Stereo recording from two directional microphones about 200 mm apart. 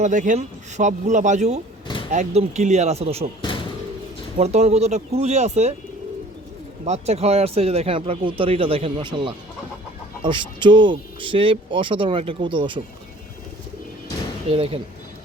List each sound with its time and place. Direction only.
0.0 s speech: 40° right (ahead or behind)
4.4 s speech: 35° right (ahead or behind)
6.8 s speech: 35° right (ahead or behind)
14.5 s speech: 30° right (ahead or behind)